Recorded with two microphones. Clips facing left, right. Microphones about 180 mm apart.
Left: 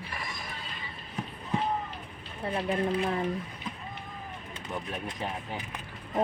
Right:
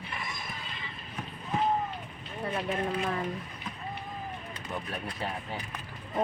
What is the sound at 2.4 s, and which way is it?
Speech, 25° left (ahead or behind).